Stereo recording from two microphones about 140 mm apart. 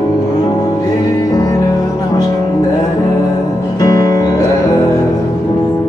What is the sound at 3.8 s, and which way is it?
Music, 30° left (ahead or behind).